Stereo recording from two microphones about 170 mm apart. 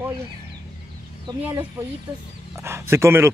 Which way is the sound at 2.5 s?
15° right (ahead or behind).